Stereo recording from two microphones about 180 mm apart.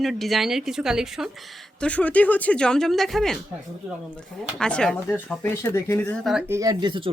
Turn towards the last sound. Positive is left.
turn(degrees=-25)  # may be behind; listen again after turning